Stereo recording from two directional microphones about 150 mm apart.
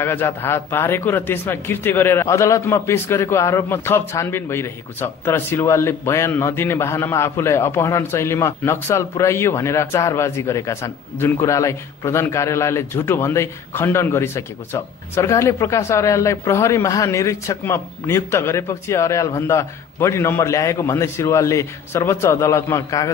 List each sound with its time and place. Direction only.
0.0 s a man's voice: 15° left (ahead or behind)